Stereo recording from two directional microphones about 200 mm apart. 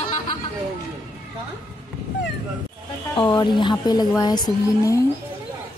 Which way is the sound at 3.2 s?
25° left (ahead or behind).